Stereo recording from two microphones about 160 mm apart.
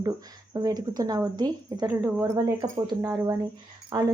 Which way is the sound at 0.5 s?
25° right (ahead or behind).